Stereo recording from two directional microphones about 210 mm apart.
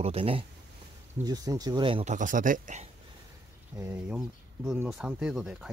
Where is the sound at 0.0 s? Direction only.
25° right (ahead or behind).